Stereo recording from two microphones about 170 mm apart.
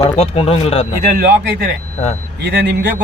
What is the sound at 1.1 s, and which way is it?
Speech, 70° right (ahead or behind).